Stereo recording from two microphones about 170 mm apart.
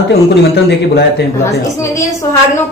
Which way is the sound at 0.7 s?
90° left.